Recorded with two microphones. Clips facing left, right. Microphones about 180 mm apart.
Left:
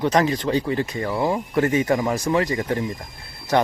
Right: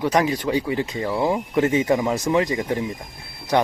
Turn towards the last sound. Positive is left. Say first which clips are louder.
# even
turn(degrees=-15)  # may be behind; listen again after turning